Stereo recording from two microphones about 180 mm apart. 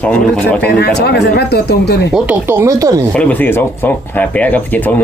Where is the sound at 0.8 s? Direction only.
65° left (ahead or behind).